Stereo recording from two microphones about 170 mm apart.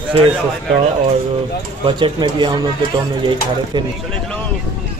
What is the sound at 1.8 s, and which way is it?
Speech, 25° right (ahead or behind).